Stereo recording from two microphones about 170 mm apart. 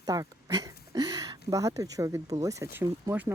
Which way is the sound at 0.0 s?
20° right (ahead or behind).